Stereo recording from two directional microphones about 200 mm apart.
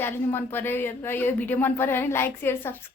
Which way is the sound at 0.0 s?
10° left (ahead or behind).